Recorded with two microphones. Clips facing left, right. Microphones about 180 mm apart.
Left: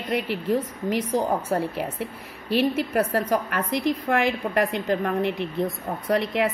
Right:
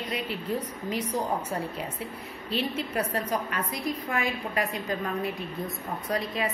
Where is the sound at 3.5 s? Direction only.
80° left.